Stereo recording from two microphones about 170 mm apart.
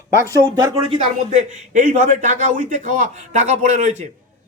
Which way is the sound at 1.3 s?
45° right (ahead or behind).